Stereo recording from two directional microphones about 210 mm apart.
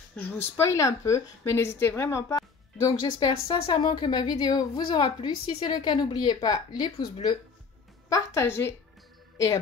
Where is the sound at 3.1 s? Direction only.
25° left (ahead or behind).